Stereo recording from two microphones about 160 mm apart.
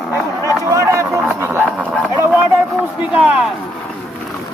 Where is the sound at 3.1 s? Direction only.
5° right (ahead or behind).